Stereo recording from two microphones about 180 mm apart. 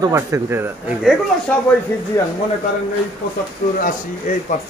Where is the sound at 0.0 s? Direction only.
15° right (ahead or behind).